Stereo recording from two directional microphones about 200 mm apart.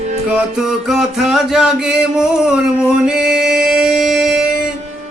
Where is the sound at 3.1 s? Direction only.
5° right (ahead or behind).